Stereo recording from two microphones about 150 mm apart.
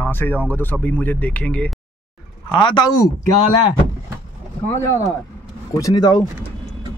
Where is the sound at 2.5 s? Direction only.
30° left (ahead or behind).